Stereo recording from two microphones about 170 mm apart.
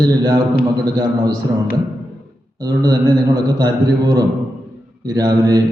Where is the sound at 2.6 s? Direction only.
25° right (ahead or behind).